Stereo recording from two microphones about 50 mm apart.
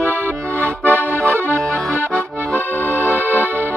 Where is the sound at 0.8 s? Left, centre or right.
Right.